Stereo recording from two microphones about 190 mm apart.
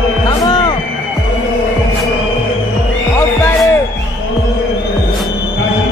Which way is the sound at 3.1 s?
15° left (ahead or behind).